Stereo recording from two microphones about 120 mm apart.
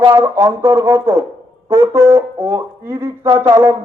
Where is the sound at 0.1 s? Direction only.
30° right (ahead or behind).